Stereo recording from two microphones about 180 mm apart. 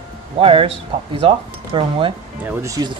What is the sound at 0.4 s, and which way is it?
A man's voice, 30° right (ahead or behind).